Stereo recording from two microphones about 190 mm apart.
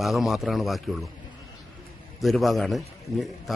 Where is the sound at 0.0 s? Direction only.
Centre (ahead or behind).